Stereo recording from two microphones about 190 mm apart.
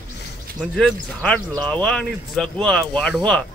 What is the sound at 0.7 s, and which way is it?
A man's voice, 5° left (ahead or behind).